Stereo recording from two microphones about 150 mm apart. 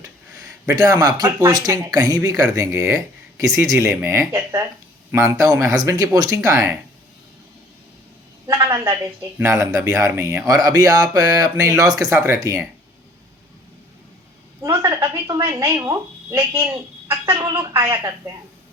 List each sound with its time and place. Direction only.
0.8 s speech: 25° right (ahead or behind)
8.6 s speech: 15° right (ahead or behind)
14.6 s speech: 20° right (ahead or behind)